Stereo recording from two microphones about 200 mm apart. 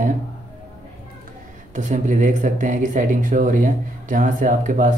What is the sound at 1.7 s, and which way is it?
Speech, 40° right (ahead or behind).